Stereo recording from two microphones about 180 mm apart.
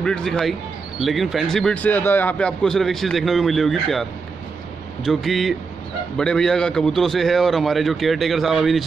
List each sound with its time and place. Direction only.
0.0 s speech: 5° left (ahead or behind)